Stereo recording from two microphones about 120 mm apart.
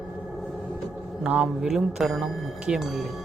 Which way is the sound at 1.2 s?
5° right (ahead or behind).